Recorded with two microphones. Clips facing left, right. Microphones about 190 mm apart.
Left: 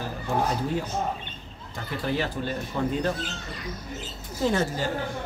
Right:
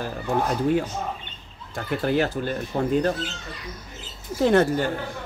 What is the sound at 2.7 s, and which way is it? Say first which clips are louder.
Speech: right 3 dB; 40° right (ahead or behind).